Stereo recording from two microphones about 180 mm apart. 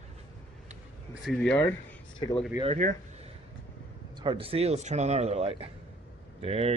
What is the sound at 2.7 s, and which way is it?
Speech, 45° right (ahead or behind).